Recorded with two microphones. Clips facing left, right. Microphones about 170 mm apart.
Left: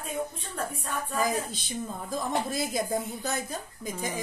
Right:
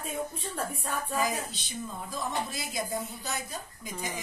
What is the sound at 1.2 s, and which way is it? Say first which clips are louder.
Speech: left 4 dB; 50° left (ahead or behind).